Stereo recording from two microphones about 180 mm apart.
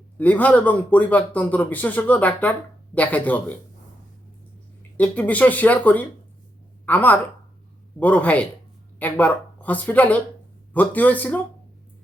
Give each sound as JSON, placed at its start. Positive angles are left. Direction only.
{"t": 0.2, "sound": "a man's voice", "side_deg": 10}
{"t": 4.8, "sound": "a man's voice", "side_deg": 10}